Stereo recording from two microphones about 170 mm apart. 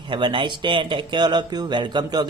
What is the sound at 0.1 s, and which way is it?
Speech, 30° right (ahead or behind).